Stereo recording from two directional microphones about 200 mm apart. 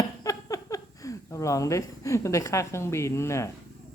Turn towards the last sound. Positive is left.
turn(degrees=15)  # may be behind; listen again after turning